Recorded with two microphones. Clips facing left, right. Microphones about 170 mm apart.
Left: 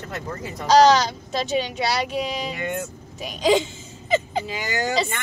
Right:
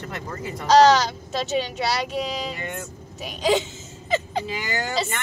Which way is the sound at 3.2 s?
5° right (ahead or behind).